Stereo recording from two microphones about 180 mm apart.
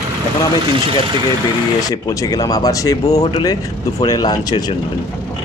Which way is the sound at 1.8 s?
20° left (ahead or behind).